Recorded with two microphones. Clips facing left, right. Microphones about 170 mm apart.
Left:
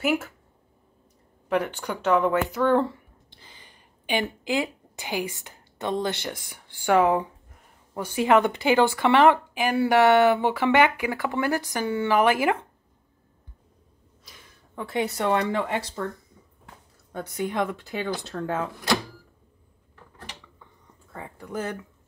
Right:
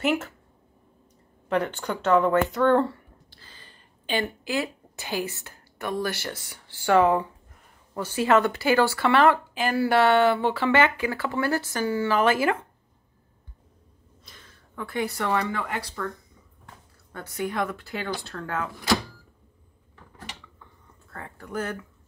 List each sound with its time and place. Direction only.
0.0 s speech: 10° left (ahead or behind)
1.5 s speech: 10° left (ahead or behind)
14.2 s a sound: 10° left (ahead or behind)
14.8 s speech: 25° left (ahead or behind)
17.2 s speech: 20° left (ahead or behind)
21.1 s a sound: 15° left (ahead or behind)